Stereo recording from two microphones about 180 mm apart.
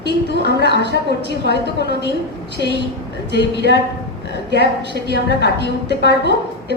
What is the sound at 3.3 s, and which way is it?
Speech, 70° left (ahead or behind).